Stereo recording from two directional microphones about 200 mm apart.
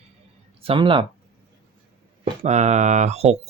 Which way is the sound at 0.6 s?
25° right (ahead or behind).